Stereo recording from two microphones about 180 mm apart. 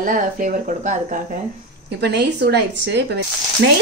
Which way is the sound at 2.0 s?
65° right (ahead or behind).